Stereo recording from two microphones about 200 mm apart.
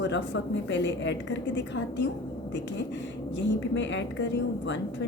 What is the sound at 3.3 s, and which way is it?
A woman's voice, 65° left (ahead or behind).